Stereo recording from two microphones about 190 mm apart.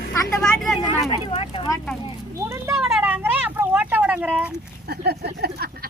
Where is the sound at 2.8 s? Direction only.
5° right (ahead or behind).